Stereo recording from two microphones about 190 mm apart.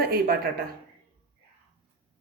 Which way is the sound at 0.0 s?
50° right (ahead or behind).